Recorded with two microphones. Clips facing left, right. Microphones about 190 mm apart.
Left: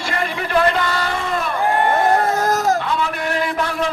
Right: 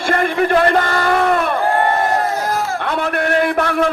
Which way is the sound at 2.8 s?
60° right (ahead or behind).